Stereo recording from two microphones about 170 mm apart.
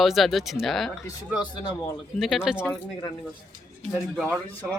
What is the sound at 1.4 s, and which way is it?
Speech, 25° left (ahead or behind).